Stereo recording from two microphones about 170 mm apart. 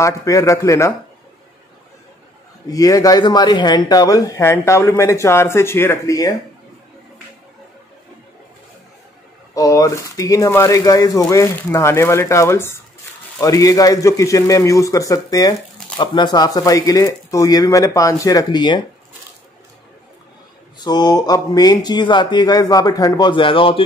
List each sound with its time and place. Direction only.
0.0 s speech: 15° left (ahead or behind)
2.7 s speech: 20° left (ahead or behind)
9.5 s speech: 20° left (ahead or behind)
20.8 s speech: 25° left (ahead or behind)